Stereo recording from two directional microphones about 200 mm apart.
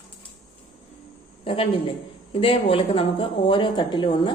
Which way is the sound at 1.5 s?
25° left (ahead or behind).